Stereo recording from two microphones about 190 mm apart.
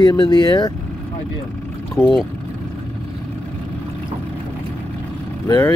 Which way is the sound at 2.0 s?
10° left (ahead or behind).